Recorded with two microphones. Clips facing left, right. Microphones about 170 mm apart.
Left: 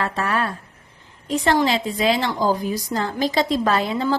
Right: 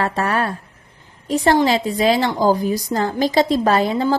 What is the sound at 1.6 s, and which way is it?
Speech, 40° right (ahead or behind).